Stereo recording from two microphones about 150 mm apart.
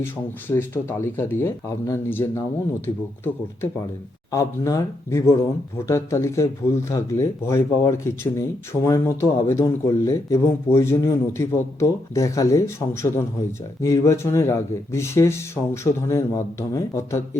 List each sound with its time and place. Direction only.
0.4 s speech: 15° left (ahead or behind)
4.3 s speech: 20° left (ahead or behind)